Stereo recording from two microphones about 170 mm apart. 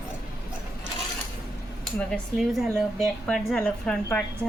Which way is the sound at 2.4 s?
Centre (ahead or behind).